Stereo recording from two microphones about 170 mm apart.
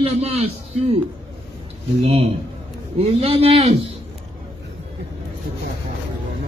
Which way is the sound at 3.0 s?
35° right (ahead or behind).